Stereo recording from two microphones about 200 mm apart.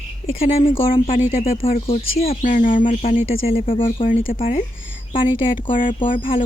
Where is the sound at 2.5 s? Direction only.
40° left (ahead or behind).